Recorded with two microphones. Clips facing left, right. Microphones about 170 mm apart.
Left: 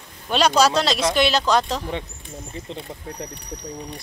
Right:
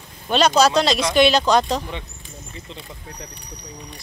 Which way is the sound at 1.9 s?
50° left (ahead or behind).